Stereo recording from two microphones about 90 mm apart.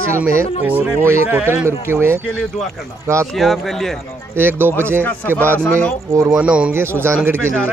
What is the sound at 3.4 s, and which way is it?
Speech, centre (ahead or behind).